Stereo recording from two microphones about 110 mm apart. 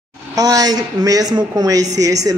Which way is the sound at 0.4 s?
35° right (ahead or behind).